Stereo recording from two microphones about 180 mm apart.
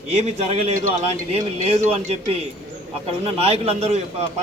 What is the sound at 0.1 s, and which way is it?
A man's voice, 35° right (ahead or behind).